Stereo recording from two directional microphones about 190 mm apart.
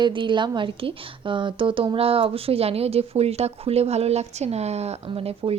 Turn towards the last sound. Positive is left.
turn(degrees=-30)  # may be behind; listen again after turning